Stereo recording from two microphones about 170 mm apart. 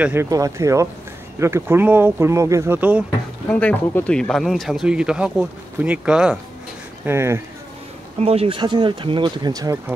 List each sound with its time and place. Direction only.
0.0 s speech: 15° right (ahead or behind)
3.4 s speech: 10° left (ahead or behind)
7.1 s speech: 15° right (ahead or behind)
8.2 s speech: 35° right (ahead or behind); by 9.9 s 20° right (ahead or behind)